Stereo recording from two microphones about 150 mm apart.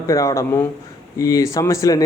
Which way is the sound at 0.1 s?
20° left (ahead or behind).